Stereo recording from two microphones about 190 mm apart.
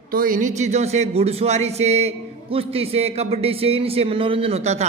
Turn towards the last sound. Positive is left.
turn(degrees=-35)  # may be behind; listen again after turning